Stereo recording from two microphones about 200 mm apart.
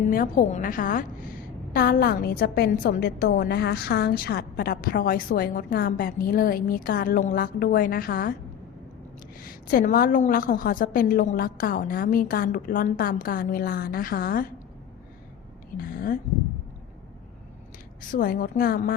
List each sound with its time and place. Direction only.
0.1 s a woman's voice: 45° left (ahead or behind)
9.4 s a woman's voice: 45° left (ahead or behind)
15.8 s a woman's voice: 45° left (ahead or behind)
18.1 s a woman's voice: 45° left (ahead or behind)